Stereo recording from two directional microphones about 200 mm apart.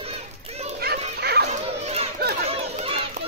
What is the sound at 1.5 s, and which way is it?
Children playing, 35° right (ahead or behind).